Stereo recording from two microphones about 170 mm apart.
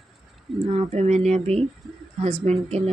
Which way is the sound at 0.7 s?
40° right (ahead or behind).